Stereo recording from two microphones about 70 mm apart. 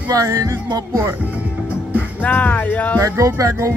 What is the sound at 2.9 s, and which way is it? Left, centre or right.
Music, right.